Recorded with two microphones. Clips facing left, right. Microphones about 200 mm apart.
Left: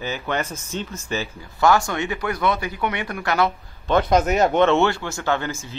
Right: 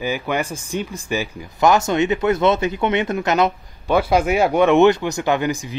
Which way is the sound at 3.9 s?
10° right (ahead or behind).